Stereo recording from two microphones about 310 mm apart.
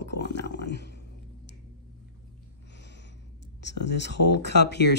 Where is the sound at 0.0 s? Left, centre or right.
Left.